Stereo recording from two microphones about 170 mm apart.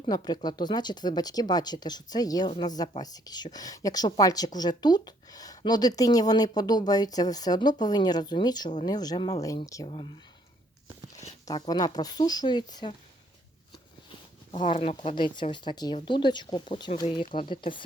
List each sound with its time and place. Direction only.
0.1 s a woman's voice: 25° left (ahead or behind)
11.4 s a woman's voice: 25° left (ahead or behind)
14.8 s a woman's voice: 35° left (ahead or behind)